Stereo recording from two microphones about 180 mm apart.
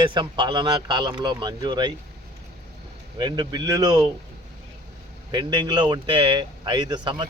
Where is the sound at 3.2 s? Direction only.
25° right (ahead or behind).